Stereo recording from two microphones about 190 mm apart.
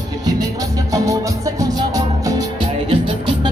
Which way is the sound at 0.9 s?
20° right (ahead or behind).